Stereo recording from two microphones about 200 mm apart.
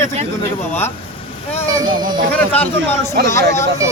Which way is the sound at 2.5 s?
10° left (ahead or behind).